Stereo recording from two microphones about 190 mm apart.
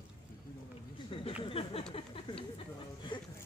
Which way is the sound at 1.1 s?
30° left (ahead or behind).